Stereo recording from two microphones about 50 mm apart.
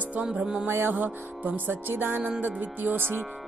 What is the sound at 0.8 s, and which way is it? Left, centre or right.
Speech, right.